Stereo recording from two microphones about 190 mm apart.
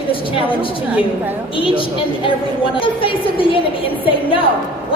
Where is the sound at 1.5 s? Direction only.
25° left (ahead or behind).